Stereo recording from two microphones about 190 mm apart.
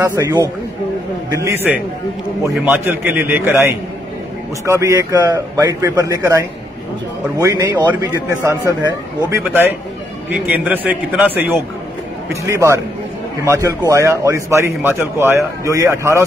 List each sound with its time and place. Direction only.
0.0 s a man's voice: 20° right (ahead or behind)